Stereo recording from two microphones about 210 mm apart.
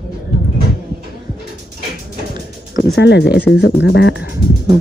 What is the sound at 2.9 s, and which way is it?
Speech, 55° left (ahead or behind).